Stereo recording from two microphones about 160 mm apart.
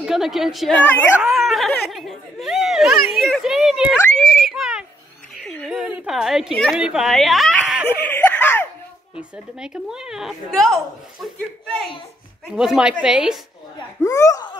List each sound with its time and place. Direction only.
0.0 s speech: centre (ahead or behind)
4.2 s a sound: centre (ahead or behind)
5.4 s a woman's voice: 5° left (ahead or behind)
8.1 s laughter: 10° left (ahead or behind)
9.6 s speech: 5° right (ahead or behind)
13.7 s speech: 20° left (ahead or behind)